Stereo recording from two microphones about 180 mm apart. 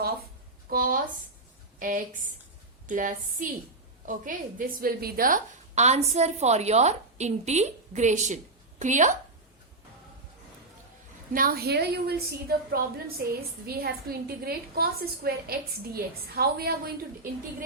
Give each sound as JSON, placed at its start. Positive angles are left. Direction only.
{"t": 0.7, "sound": "a sound", "side_deg": -50}
{"t": 1.8, "sound": "a woman's voice", "side_deg": -50}
{"t": 11.3, "sound": "a woman's voice", "side_deg": -55}